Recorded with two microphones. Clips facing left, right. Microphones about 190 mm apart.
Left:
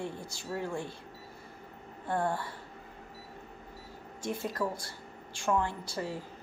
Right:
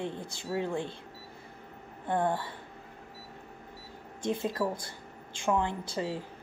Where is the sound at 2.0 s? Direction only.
20° right (ahead or behind).